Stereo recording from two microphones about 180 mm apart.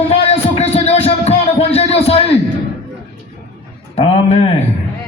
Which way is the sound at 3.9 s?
35° left (ahead or behind).